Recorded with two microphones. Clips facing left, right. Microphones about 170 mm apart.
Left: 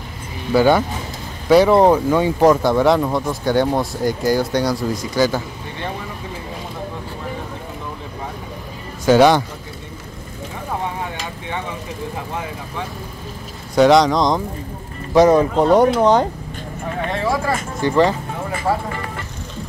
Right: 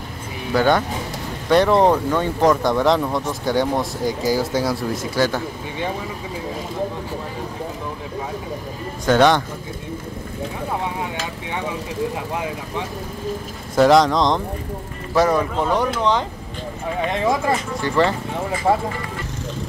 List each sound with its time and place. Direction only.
0.5 s speech: 5° left (ahead or behind)
9.0 s speech: 5° left (ahead or behind)
13.7 s speech: centre (ahead or behind)
15.1 s speech: 20° left (ahead or behind)
15.7 s speech: 45° left (ahead or behind)
17.1 s speech: 20° right (ahead or behind)
17.8 s speech: 15° left (ahead or behind)